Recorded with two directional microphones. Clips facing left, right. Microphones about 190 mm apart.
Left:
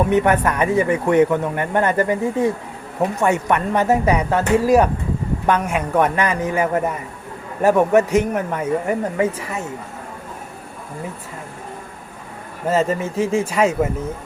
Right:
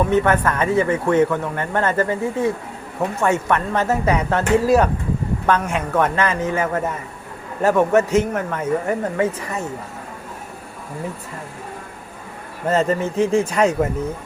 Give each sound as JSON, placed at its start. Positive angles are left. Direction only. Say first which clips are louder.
{"t": 0.0, "sound": "speech", "louder": "left 1 dB", "side_deg": 15}
{"t": 12.6, "sound": "speech", "louder": "even", "side_deg": 5}